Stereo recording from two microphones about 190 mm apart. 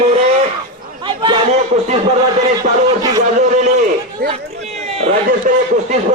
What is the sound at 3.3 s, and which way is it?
Speech, 40° right (ahead or behind).